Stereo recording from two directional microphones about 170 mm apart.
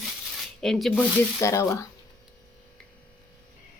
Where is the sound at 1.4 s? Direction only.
15° left (ahead or behind).